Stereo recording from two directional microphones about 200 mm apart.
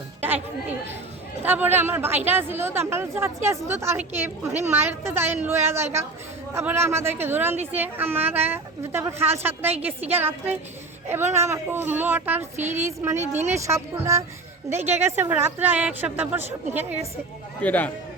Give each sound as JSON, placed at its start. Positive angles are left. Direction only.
{"t": 0.2, "sound": "chatter", "side_deg": -10}
{"t": 1.4, "sound": "a woman's voice", "side_deg": -10}
{"t": 7.5, "sound": "a woman's voice", "side_deg": -35}
{"t": 7.8, "sound": "a woman's voice", "side_deg": -10}
{"t": 14.9, "sound": "a woman's voice", "side_deg": -35}
{"t": 15.2, "sound": "a woman's voice", "side_deg": -10}
{"t": 17.6, "sound": "a man's voice", "side_deg": 10}